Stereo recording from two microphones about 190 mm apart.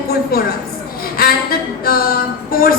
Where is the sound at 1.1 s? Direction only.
50° left (ahead or behind).